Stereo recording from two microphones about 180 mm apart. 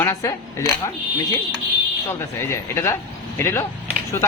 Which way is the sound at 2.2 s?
15° left (ahead or behind).